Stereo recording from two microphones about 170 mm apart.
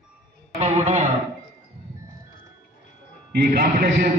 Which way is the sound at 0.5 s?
40° right (ahead or behind).